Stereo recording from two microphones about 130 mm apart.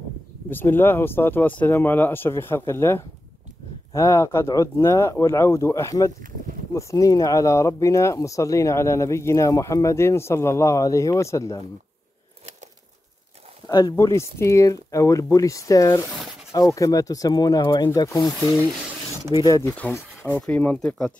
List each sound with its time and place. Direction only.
0.5 s speech: 15° left (ahead or behind)
13.7 s speech: 30° left (ahead or behind)
19.4 s speech: 25° left (ahead or behind)
19.9 s speech: 15° left (ahead or behind)